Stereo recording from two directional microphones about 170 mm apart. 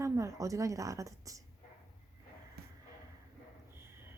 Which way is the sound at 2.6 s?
65° right (ahead or behind).